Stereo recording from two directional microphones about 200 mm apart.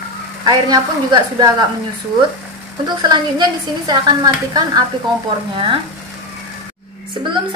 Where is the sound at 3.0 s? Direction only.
20° right (ahead or behind).